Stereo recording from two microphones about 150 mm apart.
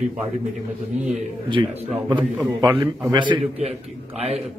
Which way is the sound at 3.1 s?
35° right (ahead or behind).